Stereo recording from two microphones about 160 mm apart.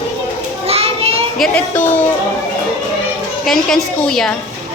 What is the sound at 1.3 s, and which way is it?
Speech, centre (ahead or behind).